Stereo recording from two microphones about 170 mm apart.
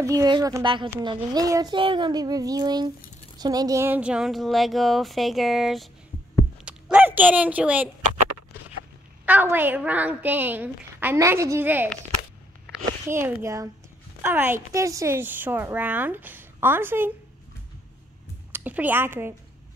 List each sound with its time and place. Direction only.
0.0 s speech: 20° right (ahead or behind); by 5.9 s centre (ahead or behind)
6.6 s a sound: 10° right (ahead or behind)
9.2 s a woman's voice: 10° right (ahead or behind)
13.1 s a woman's voice: 15° right (ahead or behind)
18.5 s a woman's voice: 10° right (ahead or behind)